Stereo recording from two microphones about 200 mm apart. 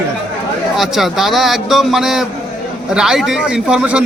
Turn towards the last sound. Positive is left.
turn(degrees=-5)  # may be behind; listen again after turning